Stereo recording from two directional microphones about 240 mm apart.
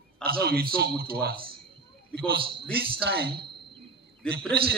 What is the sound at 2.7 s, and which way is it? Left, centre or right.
Speech, right.